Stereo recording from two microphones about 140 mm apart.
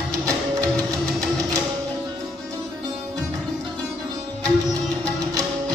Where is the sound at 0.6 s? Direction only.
25° right (ahead or behind).